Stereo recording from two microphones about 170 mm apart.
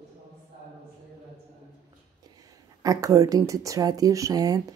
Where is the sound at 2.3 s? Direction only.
20° right (ahead or behind).